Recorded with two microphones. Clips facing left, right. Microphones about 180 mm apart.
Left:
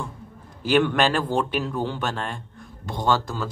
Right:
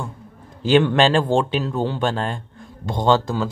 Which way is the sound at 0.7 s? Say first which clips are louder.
Right 4 dB; 25° right (ahead or behind).